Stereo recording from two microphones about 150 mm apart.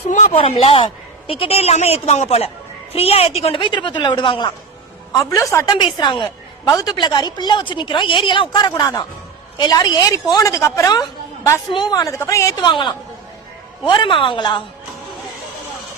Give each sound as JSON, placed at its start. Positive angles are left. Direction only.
{"t": 0.3, "sound": "a woman's voice", "side_deg": 40}
{"t": 5.1, "sound": "a woman's voice", "side_deg": 20}
{"t": 5.7, "sound": "a woman's voice", "side_deg": 30}
{"t": 12.6, "sound": "a woman's voice", "side_deg": 30}